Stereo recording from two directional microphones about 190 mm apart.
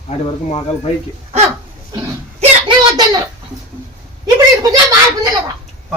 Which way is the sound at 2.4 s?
25° right (ahead or behind).